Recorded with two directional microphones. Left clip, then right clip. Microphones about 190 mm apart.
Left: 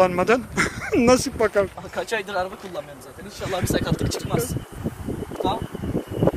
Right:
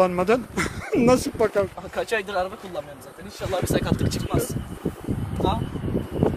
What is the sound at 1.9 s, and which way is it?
Speech, 20° right (ahead or behind).